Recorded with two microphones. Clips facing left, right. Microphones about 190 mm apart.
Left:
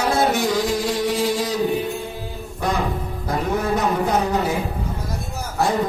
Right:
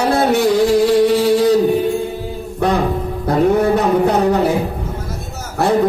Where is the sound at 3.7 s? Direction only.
60° right (ahead or behind).